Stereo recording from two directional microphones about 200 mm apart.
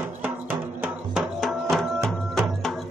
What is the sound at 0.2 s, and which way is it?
Music, 10° right (ahead or behind).